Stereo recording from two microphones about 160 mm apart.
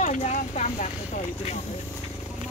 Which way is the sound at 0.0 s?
50° left (ahead or behind).